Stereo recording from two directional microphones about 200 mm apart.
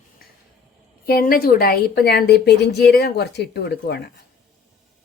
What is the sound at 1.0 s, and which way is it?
A woman's voice, 50° left (ahead or behind).